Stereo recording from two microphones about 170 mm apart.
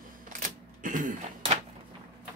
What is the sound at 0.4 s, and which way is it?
Camera, 50° right (ahead or behind).